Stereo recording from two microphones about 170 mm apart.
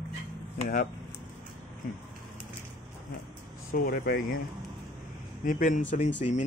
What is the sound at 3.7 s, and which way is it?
Speech, 60° left (ahead or behind).